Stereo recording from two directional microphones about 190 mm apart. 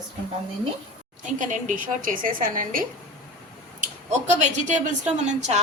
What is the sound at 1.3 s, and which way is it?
A woman's voice, 40° right (ahead or behind).